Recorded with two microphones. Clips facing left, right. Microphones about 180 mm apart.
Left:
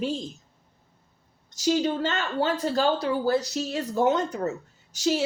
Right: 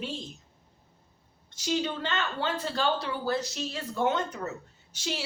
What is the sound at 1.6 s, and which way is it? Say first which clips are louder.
A woman's voice: left 6 dB; 45° left (ahead or behind).